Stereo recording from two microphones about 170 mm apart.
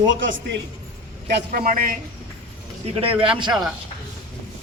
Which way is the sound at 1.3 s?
65° right (ahead or behind).